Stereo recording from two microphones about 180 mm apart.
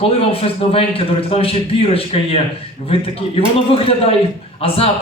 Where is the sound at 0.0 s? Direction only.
30° left (ahead or behind).